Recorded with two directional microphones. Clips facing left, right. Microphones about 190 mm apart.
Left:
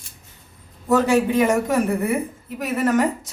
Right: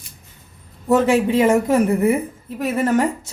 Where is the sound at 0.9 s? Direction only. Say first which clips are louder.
Right 2 dB; 25° right (ahead or behind).